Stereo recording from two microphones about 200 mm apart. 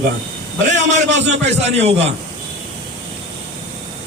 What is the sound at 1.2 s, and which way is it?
Speech, 35° right (ahead or behind).